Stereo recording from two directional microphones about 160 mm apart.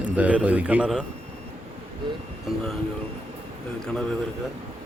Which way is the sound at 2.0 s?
30° right (ahead or behind).